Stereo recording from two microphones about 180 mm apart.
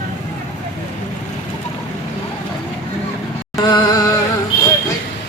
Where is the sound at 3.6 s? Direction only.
20° left (ahead or behind).